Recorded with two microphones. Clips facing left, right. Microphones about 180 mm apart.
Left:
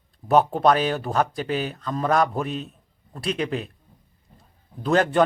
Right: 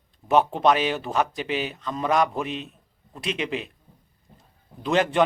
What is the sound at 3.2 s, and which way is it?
Speech, 40° left (ahead or behind).